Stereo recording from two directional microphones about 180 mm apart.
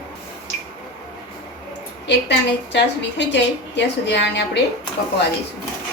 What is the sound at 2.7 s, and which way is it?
A woman's voice, 75° left (ahead or behind).